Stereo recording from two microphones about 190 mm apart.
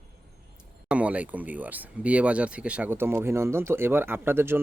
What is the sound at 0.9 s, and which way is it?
Speech, 5° right (ahead or behind).